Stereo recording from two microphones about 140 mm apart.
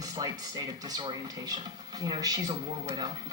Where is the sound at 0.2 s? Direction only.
30° right (ahead or behind).